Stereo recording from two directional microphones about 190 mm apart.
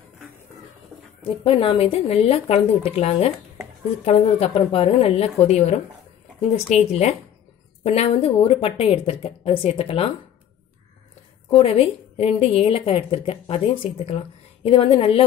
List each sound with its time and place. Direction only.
1.2 s a woman's voice: 30° left (ahead or behind)
11.5 s a woman's voice: 30° left (ahead or behind)